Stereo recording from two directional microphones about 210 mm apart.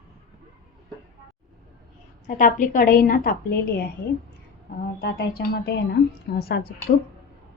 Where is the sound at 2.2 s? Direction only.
40° left (ahead or behind).